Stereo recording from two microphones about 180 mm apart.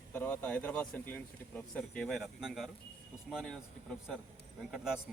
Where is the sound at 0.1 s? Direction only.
10° left (ahead or behind).